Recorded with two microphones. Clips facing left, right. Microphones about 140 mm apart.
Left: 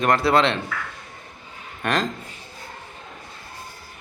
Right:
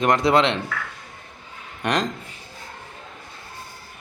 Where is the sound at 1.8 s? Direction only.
20° right (ahead or behind).